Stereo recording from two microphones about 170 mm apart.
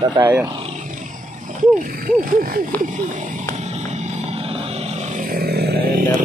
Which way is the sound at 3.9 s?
40° right (ahead or behind).